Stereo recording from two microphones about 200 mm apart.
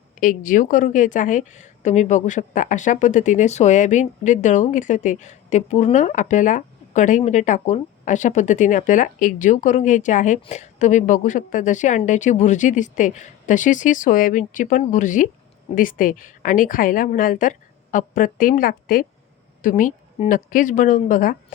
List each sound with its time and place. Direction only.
0.2 s a woman's voice: 40° left (ahead or behind)